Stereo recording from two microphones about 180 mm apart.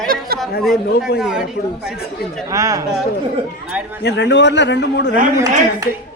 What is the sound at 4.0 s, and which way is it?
A man's voice, 70° left (ahead or behind).